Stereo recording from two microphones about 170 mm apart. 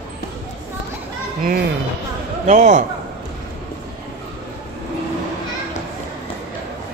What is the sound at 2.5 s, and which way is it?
Speech, 45° right (ahead or behind).